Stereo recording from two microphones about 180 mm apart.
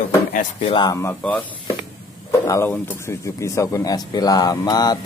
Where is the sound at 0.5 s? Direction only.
30° left (ahead or behind); by 1.4 s 10° left (ahead or behind).